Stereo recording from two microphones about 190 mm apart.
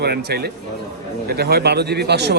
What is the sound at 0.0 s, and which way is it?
Speech, 60° right (ahead or behind).